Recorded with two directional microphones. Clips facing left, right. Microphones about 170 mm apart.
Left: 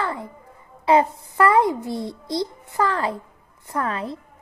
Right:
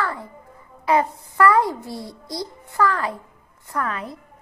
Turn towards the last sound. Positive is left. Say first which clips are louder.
# left 2 dB
turn(degrees=30)  # may be behind; listen again after turning